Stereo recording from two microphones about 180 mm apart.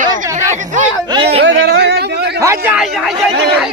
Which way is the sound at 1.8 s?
65° right (ahead or behind).